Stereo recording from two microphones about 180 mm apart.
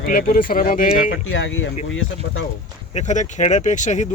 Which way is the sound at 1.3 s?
90° left.